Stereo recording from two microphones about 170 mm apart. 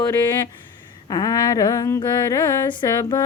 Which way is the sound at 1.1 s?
20° left (ahead or behind).